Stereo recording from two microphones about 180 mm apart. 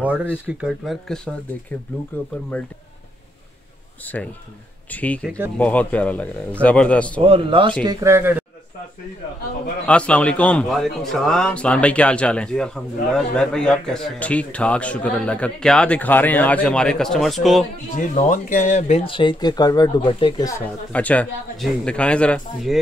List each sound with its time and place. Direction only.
0.0 s a man's voice: 10° right (ahead or behind); by 2.7 s 10° left (ahead or behind)
4.0 s a man's voice: 10° left (ahead or behind)
7.2 s speech: 30° right (ahead or behind)
7.8 s speech: 20° right (ahead or behind)
9.8 s a man's voice: 5° left (ahead or behind)
17.9 s speech: 45° left (ahead or behind); by 20.6 s 20° left (ahead or behind)
20.9 s a man's voice: 10° left (ahead or behind)